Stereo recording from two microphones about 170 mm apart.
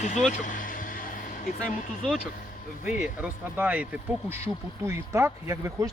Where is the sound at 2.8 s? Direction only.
10° right (ahead or behind).